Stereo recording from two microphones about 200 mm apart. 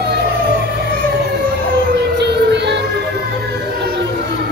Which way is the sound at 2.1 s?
60° right (ahead or behind).